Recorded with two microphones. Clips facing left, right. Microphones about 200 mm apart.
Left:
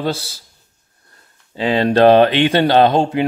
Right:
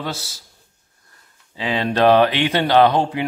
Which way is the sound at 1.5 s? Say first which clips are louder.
Left 6 dB; 35° left (ahead or behind).